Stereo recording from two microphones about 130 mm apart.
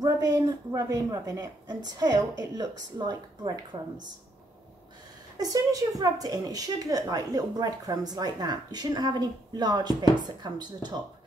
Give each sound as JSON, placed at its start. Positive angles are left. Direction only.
{"t": 0.0, "sound": "a woman's voice", "side_deg": -30}
{"t": 5.4, "sound": "a woman's voice", "side_deg": -30}